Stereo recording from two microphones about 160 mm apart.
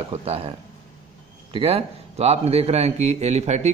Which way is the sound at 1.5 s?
35° right (ahead or behind).